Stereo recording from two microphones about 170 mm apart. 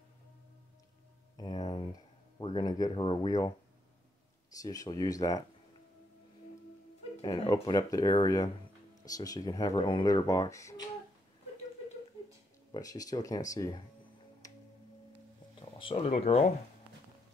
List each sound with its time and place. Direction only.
1.3 s a sound: 20° left (ahead or behind)
2.4 s speech: 25° left (ahead or behind)
4.6 s speech: 20° left (ahead or behind)
7.2 s speech: 20° left (ahead or behind)
12.7 s speech: 20° left (ahead or behind)
14.4 s music: 20° left (ahead or behind)
15.8 s speech: 35° left (ahead or behind)